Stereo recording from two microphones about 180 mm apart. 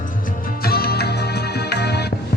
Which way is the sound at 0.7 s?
60° left (ahead or behind).